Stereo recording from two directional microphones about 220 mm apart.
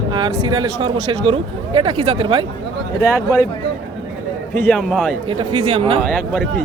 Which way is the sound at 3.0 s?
15° left (ahead or behind).